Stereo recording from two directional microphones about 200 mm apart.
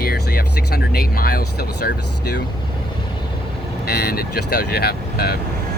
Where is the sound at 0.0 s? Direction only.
50° left (ahead or behind).